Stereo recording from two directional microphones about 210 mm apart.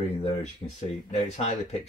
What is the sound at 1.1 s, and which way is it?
Speech, 35° left (ahead or behind).